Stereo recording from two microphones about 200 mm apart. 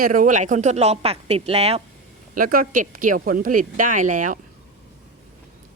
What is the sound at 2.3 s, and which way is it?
Speech, 45° right (ahead or behind).